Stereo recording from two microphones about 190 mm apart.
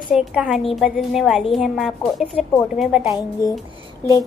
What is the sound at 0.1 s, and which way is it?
A woman's voice, 5° right (ahead or behind).